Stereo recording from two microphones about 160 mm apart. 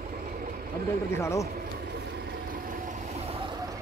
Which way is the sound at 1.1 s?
15° left (ahead or behind).